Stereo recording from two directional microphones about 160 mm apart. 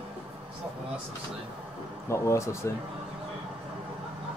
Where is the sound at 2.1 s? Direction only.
20° left (ahead or behind).